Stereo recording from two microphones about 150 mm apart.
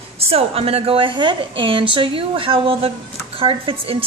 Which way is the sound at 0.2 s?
40° right (ahead or behind).